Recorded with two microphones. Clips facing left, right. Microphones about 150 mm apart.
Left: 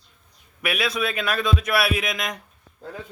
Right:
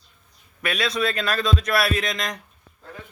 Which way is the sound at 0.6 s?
5° left (ahead or behind).